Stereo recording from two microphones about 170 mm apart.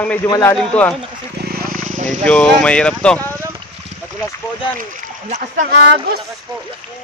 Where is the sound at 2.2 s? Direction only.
5° left (ahead or behind).